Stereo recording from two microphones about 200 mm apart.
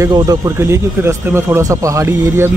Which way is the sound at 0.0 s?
15° right (ahead or behind).